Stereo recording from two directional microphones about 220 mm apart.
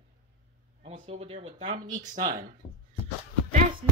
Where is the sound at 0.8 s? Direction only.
30° right (ahead or behind).